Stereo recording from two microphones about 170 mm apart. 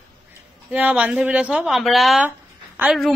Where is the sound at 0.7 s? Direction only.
10° right (ahead or behind).